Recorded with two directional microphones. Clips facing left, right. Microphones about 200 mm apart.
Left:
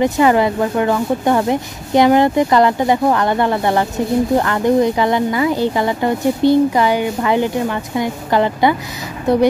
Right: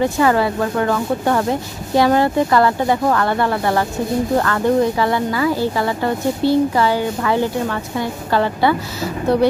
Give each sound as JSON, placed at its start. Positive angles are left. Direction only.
{"t": 0.0, "sound": "speech", "side_deg": 20}